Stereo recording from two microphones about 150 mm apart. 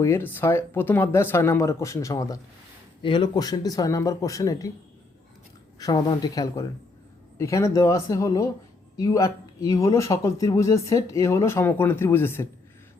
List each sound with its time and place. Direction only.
0.0 s speech: 15° left (ahead or behind)
5.8 s speech: 25° left (ahead or behind)